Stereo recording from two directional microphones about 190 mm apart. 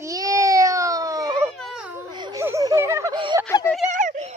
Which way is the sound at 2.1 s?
25° right (ahead or behind).